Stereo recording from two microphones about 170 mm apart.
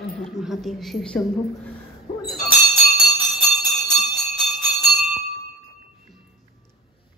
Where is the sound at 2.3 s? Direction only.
Centre (ahead or behind).